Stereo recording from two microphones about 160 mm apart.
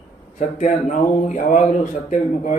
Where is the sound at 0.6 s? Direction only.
50° left (ahead or behind).